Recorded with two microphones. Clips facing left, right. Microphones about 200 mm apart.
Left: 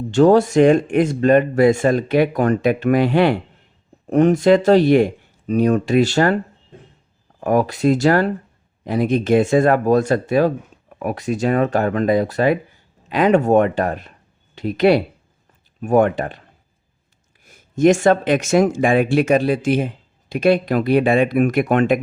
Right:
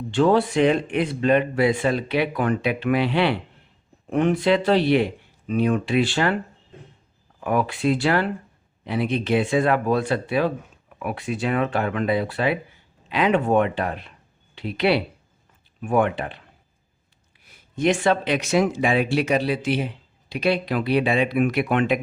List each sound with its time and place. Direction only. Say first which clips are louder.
0.1 s speech: left 6 dB; 45° left (ahead or behind)
17.4 s speech: left 8 dB; 45° left (ahead or behind)